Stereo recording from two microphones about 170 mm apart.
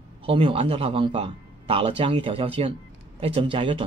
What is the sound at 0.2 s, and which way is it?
A man's voice, 35° right (ahead or behind).